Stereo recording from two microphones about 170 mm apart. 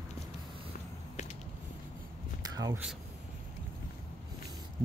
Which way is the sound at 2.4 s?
20° right (ahead or behind).